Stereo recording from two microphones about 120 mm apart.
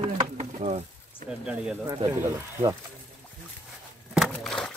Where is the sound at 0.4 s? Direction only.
70° right (ahead or behind).